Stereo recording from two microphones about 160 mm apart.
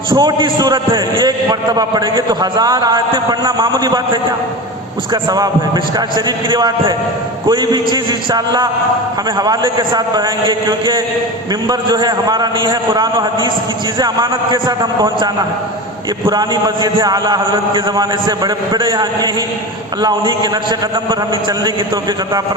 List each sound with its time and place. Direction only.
0.1 s a man's voice: 30° right (ahead or behind)